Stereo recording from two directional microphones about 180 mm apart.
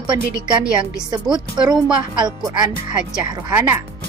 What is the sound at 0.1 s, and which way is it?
A woman's voice, 25° right (ahead or behind).